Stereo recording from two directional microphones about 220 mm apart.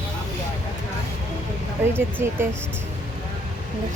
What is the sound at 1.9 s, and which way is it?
Speech, 10° right (ahead or behind).